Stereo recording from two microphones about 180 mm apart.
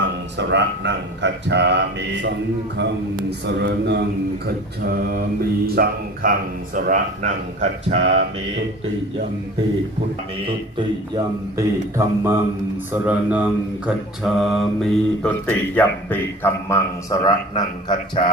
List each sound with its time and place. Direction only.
0.0 s speech: 80° right
4.9 s mantra: 55° right (ahead or behind)
6.7 s speech: 45° right (ahead or behind)
10.4 s a man's voice: 25° right (ahead or behind); by 18.2 s 25° left (ahead or behind)